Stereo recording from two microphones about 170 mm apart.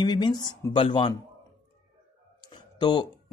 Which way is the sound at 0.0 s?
25° left (ahead or behind).